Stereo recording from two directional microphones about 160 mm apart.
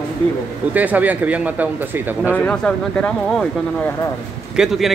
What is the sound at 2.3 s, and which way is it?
A man's voice, 5° left (ahead or behind).